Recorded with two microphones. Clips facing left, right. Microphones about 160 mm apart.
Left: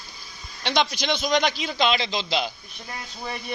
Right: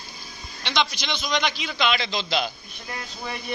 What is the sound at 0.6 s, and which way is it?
A man's voice, 45° left (ahead or behind).